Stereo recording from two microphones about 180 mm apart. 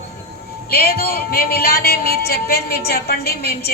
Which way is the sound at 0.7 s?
60° left (ahead or behind).